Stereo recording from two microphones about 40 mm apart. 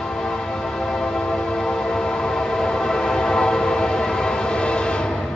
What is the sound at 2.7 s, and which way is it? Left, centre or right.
Train, centre.